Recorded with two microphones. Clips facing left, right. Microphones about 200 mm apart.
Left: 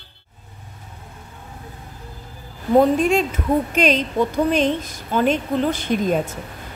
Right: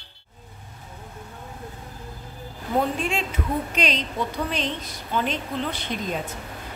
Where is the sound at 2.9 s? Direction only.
45° left (ahead or behind).